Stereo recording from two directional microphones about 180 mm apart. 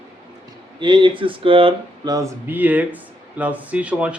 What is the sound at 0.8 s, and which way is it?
Speech, 25° right (ahead or behind).